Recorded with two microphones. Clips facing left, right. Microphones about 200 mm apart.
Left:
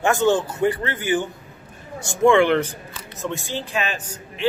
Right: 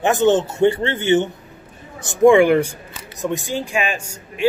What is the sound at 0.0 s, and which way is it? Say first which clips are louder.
A man's voice: right 3 dB; 20° right (ahead or behind).